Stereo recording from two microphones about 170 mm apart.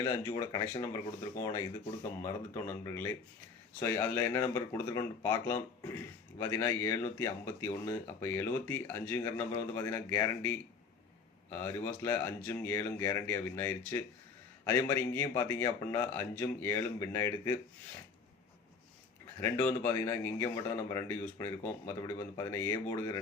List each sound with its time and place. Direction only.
0.0 s speech: 15° left (ahead or behind)
19.4 s speech: 15° left (ahead or behind)